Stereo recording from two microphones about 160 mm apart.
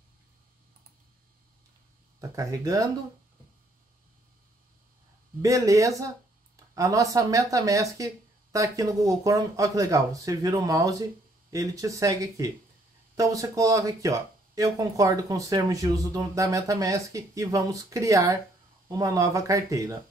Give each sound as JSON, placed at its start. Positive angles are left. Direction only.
{"t": 2.1, "sound": "speech", "side_deg": -20}
{"t": 5.4, "sound": "speech", "side_deg": -20}